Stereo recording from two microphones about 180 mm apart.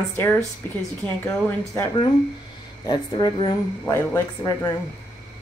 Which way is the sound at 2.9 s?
25° left (ahead or behind).